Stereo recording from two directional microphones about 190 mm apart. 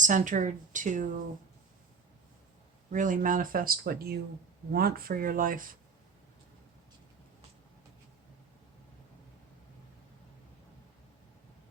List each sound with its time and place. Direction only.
0.0 s a woman's voice: 40° right (ahead or behind)
2.9 s speech: 45° right (ahead or behind)